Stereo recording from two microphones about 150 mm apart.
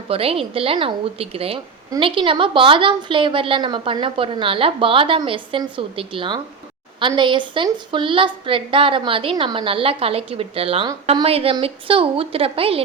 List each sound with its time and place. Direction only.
0.1 s a woman's voice: 40° right (ahead or behind)